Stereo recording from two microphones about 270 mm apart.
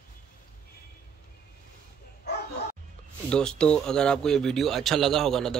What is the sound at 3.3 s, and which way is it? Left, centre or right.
Speech, centre.